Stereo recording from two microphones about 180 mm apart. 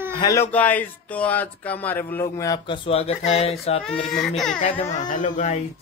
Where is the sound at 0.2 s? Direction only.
15° left (ahead or behind); by 3.8 s 35° left (ahead or behind).